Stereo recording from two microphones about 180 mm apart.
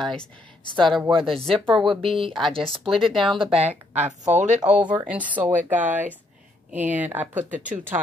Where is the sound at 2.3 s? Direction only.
Centre (ahead or behind).